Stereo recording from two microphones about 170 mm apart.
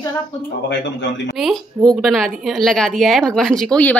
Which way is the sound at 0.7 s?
90° left.